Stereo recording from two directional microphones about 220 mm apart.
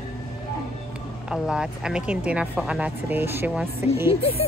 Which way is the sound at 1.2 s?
5° right (ahead or behind).